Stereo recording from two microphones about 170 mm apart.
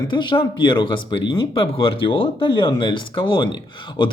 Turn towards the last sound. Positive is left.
turn(degrees=30)  # may be behind; listen again after turning